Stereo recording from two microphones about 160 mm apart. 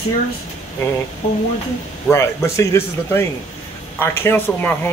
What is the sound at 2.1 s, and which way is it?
Speech, 15° left (ahead or behind).